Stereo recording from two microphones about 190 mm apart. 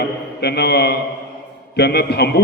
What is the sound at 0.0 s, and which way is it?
A man's voice, 60° left (ahead or behind).